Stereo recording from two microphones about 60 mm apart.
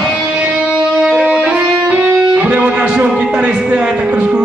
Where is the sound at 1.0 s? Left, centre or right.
Centre.